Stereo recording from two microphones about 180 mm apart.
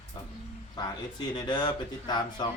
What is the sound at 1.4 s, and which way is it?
Speech, 25° left (ahead or behind).